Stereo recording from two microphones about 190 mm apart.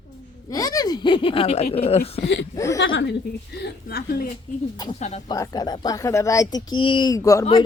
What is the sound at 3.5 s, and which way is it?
Speech, 55° left (ahead or behind).